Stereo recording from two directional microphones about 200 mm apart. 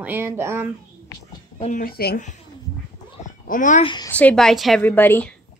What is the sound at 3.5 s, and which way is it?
Speech, 40° left (ahead or behind).